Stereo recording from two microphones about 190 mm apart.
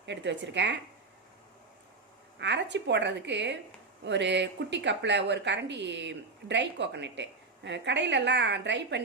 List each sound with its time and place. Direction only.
0.0 s speech: 65° right (ahead or behind)
2.4 s speech: 65° right (ahead or behind)